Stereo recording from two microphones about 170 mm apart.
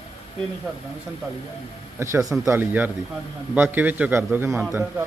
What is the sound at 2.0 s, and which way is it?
Speech, 15° right (ahead or behind).